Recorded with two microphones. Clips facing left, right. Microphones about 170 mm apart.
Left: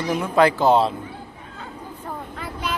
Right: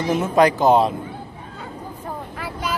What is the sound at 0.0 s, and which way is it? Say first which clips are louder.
Speech: right 2 dB; 25° right (ahead or behind).